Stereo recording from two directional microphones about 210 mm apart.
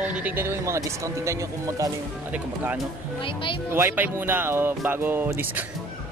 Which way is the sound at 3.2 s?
25° left (ahead or behind).